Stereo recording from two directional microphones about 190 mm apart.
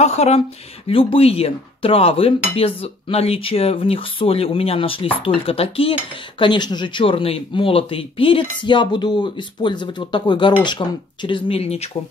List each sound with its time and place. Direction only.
0.0 s speech: 35° left (ahead or behind)